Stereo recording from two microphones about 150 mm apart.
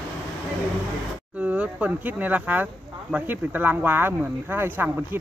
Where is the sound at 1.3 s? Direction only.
10° right (ahead or behind).